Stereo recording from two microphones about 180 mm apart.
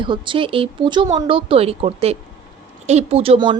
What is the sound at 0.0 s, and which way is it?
A woman's voice, 25° right (ahead or behind).